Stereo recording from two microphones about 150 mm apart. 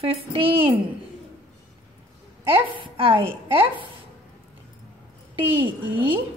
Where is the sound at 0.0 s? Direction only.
40° right (ahead or behind).